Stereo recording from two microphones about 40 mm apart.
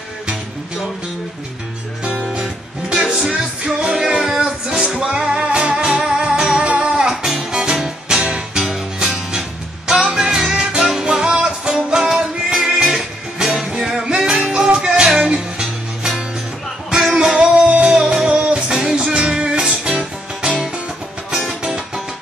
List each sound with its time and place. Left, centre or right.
2.4 s music: centre
7.2 s music: centre
17.6 s music: right